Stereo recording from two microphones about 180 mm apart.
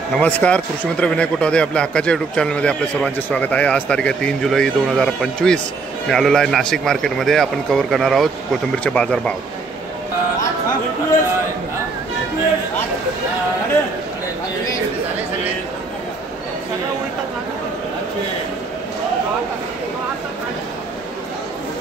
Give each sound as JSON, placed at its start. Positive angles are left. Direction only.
{"t": 0.2, "sound": "speech", "side_deg": 5}